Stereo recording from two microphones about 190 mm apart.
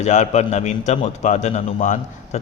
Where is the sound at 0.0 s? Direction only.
40° left (ahead or behind).